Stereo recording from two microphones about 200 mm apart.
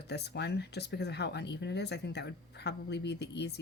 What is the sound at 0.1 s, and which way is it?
Speech, 55° left (ahead or behind).